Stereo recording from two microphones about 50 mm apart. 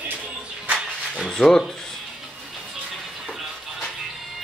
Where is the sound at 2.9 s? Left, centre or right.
Centre.